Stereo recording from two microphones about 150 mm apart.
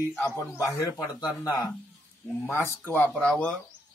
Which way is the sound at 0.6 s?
25° left (ahead or behind).